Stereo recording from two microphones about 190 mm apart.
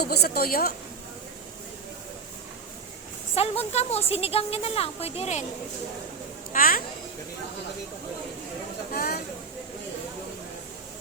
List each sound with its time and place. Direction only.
0.0 s a woman's voice: 55° left (ahead or behind)
3.3 s a woman's voice: 30° left (ahead or behind)
6.5 s speech: 45° left (ahead or behind)
9.0 s a woman's voice: 50° left (ahead or behind)